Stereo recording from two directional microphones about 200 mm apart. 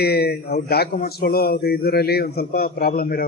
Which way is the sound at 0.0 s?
50° left (ahead or behind).